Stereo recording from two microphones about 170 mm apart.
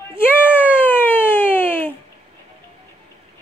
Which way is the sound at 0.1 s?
10° left (ahead or behind).